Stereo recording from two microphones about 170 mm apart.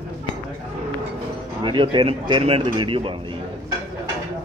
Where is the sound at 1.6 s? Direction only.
30° right (ahead or behind).